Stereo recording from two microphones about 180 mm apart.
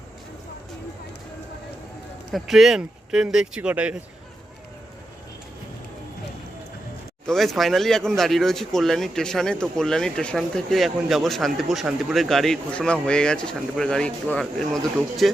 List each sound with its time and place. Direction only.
2.3 s speech: centre (ahead or behind)
7.3 s speech: centre (ahead or behind)